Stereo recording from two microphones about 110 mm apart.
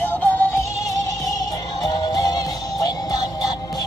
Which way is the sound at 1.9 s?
35° left (ahead or behind).